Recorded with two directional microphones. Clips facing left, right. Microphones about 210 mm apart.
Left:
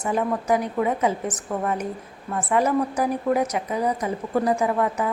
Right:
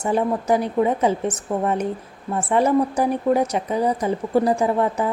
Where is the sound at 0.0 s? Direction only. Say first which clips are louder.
Right 3 dB; 30° right (ahead or behind).